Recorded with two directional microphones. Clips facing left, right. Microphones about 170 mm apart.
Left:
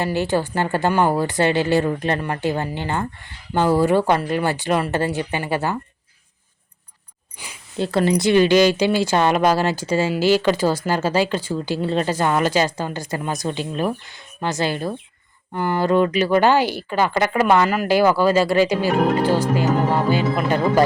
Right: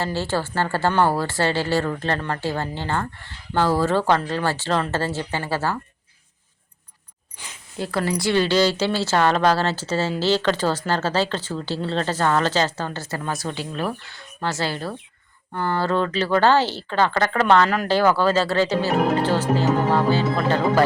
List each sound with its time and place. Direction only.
0.0 s speech: 15° left (ahead or behind)
7.3 s a sound: 10° left (ahead or behind)
7.8 s speech: 25° left (ahead or behind)